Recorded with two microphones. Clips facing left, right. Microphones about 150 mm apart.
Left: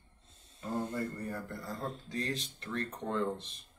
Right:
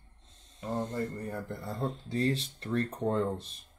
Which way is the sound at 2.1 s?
30° right (ahead or behind).